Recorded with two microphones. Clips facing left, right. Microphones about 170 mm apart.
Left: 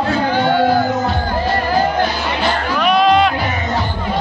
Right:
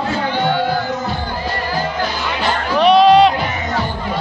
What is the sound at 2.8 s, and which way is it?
Music, 35° right (ahead or behind).